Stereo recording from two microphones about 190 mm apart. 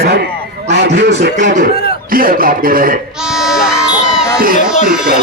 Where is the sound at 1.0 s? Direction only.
60° right (ahead or behind).